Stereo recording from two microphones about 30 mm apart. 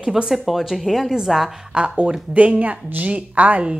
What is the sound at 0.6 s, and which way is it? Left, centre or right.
Speech, centre.